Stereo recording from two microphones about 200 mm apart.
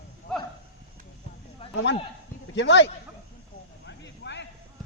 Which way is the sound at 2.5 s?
65° left (ahead or behind).